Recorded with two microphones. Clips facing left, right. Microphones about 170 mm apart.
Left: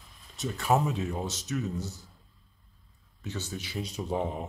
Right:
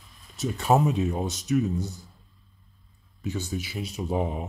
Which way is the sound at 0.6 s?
20° right (ahead or behind).